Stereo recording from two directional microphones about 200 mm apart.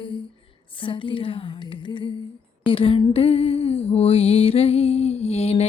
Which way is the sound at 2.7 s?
25° left (ahead or behind).